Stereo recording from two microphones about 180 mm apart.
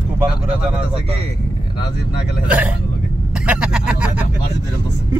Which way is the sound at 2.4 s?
10° right (ahead or behind).